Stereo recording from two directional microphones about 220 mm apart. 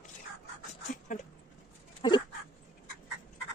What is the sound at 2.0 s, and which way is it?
Dog, 20° left (ahead or behind).